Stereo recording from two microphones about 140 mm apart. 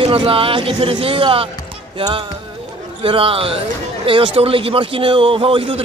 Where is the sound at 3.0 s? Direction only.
40° right (ahead or behind).